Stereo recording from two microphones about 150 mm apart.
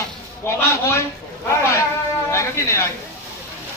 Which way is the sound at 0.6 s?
20° left (ahead or behind).